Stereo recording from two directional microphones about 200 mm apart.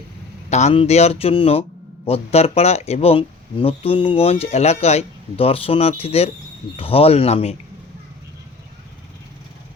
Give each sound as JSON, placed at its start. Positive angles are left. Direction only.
{"t": 0.5, "sound": "speech", "side_deg": 30}